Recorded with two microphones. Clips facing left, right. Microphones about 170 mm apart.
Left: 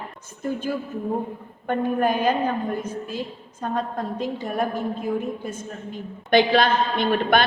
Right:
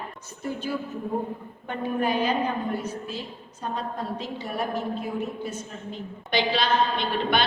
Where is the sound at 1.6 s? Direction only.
50° left (ahead or behind).